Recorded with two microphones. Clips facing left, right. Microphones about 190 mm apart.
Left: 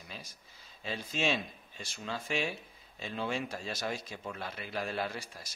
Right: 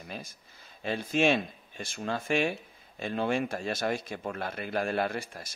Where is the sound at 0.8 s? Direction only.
55° right (ahead or behind).